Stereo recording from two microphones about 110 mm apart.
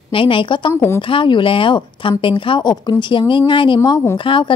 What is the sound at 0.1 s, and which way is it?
Speech, 50° left (ahead or behind).